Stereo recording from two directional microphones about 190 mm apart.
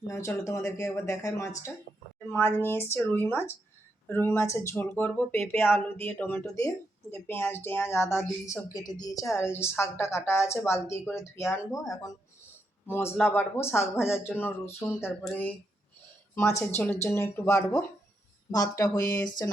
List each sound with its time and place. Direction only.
0.1 s a woman's voice: 15° left (ahead or behind)